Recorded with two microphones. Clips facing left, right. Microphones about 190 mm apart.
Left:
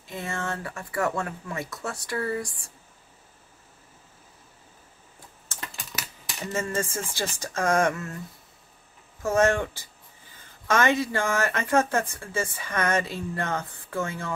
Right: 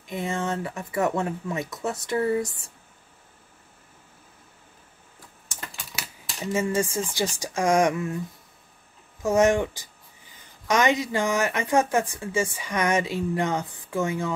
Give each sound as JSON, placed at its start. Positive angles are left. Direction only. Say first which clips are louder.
{"t": 0.0, "sound": "speech", "louder": "right 4 dB", "side_deg": -15}
{"t": 5.5, "sound": "typing", "louder": "even", "side_deg": -15}
{"t": 6.4, "sound": "speech", "louder": "right 4 dB", "side_deg": -10}
{"t": 9.2, "sound": "speech", "louder": "right 2 dB", "side_deg": -15}